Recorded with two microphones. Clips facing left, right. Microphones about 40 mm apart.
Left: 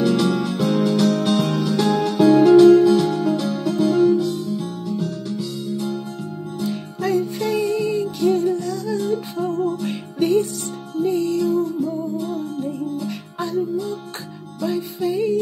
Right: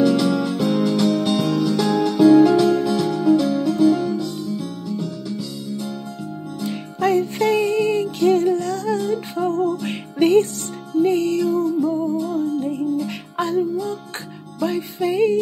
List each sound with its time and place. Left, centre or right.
0.0 s music: centre
0.9 s music: centre
1.3 s music: left
1.8 s music: centre
6.7 s music: right
8.5 s humming: right
8.9 s music: right
9.8 s music: right
11.3 s music: centre
14.6 s music: right
15.0 s music: right